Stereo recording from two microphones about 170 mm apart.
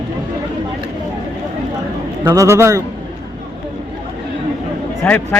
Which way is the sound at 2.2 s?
15° right (ahead or behind).